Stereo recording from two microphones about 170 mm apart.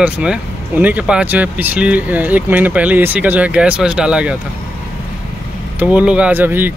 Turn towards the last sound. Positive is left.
turn(degrees=-10)  # may be behind; listen again after turning